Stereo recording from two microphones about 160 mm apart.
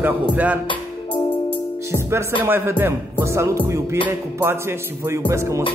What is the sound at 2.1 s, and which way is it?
Music, 15° right (ahead or behind).